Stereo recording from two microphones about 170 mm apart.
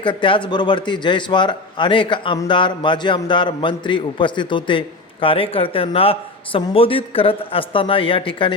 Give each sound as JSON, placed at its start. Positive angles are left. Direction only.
{"t": 0.0, "sound": "a man's voice", "side_deg": 30}